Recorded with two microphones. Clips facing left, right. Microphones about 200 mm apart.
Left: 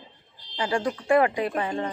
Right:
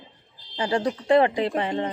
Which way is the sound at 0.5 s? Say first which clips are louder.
Right 2 dB; 25° right (ahead or behind).